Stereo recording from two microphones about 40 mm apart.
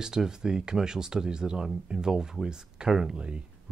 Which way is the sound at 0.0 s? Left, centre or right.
Centre.